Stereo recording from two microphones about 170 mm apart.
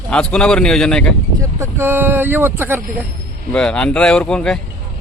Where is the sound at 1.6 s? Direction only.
15° right (ahead or behind).